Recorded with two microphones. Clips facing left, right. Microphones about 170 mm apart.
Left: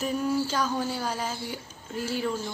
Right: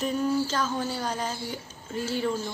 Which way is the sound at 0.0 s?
10° left (ahead or behind).